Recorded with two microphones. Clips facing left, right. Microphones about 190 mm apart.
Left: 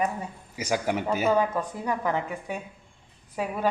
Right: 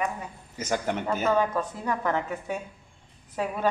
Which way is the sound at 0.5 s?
10° left (ahead or behind).